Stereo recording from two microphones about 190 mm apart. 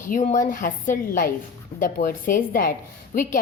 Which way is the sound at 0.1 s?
40° left (ahead or behind).